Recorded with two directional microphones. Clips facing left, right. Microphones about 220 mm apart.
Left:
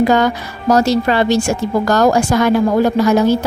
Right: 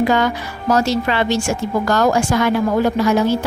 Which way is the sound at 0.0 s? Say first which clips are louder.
Left 3 dB; 40° left (ahead or behind).